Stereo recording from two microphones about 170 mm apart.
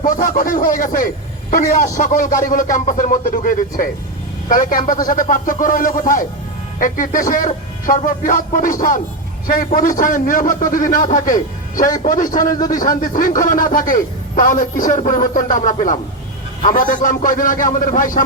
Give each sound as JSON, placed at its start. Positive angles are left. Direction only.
{"t": 0.0, "sound": "a man's voice", "side_deg": 50}